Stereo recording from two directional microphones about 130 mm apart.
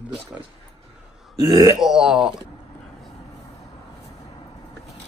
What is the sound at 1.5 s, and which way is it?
Grunt, 30° right (ahead or behind).